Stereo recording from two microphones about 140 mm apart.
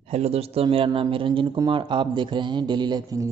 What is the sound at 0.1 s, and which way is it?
A man's voice, 50° right (ahead or behind).